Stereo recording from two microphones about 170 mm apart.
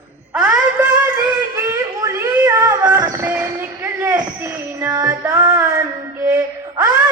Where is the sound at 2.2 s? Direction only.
15° right (ahead or behind).